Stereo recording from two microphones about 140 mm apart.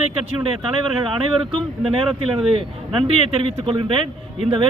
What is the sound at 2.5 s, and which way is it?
Speech, 45° right (ahead or behind).